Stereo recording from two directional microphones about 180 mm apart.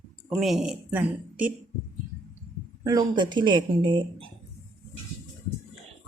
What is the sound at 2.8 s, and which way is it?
Speech, 25° right (ahead or behind).